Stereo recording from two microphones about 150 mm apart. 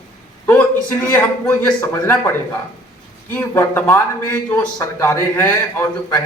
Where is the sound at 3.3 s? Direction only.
15° left (ahead or behind).